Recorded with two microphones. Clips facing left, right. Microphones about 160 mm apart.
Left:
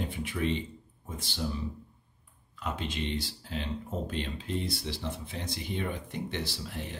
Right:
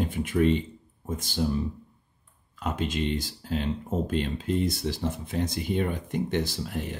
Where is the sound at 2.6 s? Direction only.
45° right (ahead or behind).